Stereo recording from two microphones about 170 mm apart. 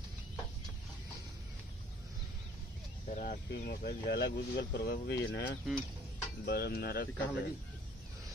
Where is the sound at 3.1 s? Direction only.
60° left (ahead or behind); by 5.4 s 80° left.